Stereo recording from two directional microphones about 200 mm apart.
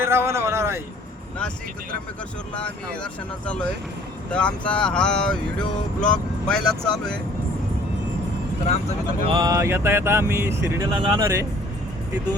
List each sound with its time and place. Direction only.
0.0 s a sound: 10° right (ahead or behind)
2.6 s speech: 5° left (ahead or behind)
9.2 s speech: 25° right (ahead or behind)
10.9 s speech: 25° right (ahead or behind)